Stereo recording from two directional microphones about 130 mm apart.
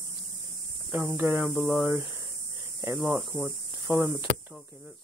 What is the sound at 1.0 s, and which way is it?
Speech, 20° right (ahead or behind).